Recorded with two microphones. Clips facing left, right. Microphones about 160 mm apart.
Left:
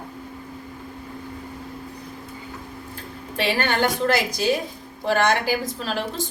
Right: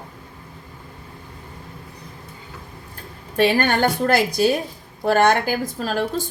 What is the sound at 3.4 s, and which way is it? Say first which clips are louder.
Speech: right 5 dB; 45° right (ahead or behind).